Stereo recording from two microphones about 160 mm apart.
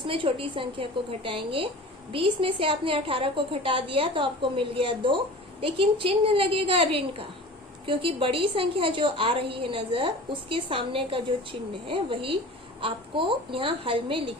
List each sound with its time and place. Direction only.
0.1 s a woman's voice: 35° right (ahead or behind)